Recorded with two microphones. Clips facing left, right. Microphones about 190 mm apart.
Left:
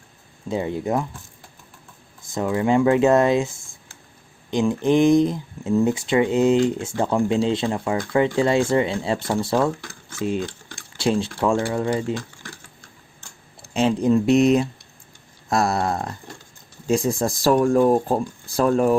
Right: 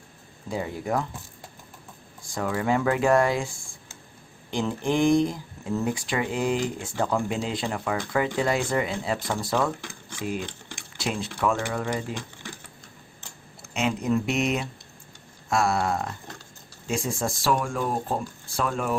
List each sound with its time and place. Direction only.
0.5 s speech: 25° left (ahead or behind)
2.2 s speech: 20° left (ahead or behind)
4.5 s speech: 20° left (ahead or behind)
10.9 s speech: 30° left (ahead or behind)
13.7 s speech: 30° left (ahead or behind)